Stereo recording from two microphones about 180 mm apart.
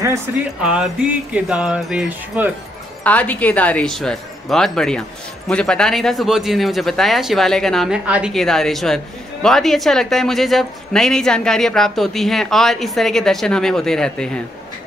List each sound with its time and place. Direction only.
0.0 s speech: 15° right (ahead or behind)
0.6 s speech: 5° right (ahead or behind)
3.0 s speech: 10° left (ahead or behind)